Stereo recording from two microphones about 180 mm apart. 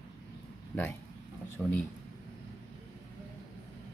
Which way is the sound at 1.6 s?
10° left (ahead or behind).